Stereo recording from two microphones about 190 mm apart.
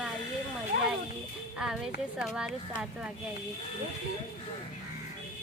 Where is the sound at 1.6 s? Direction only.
Centre (ahead or behind).